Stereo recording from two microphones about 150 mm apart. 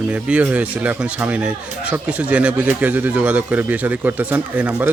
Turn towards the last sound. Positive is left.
turn(degrees=-10)  # may be behind; listen again after turning